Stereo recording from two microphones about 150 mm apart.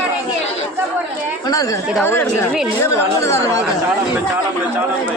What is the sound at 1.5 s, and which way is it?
Speech, 25° left (ahead or behind).